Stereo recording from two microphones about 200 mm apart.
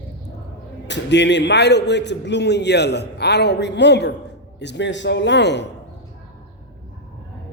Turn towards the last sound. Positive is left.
turn(degrees=60)  # may be behind; listen again after turning